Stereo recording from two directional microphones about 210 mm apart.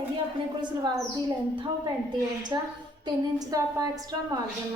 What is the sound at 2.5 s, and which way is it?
Speech, 20° right (ahead or behind).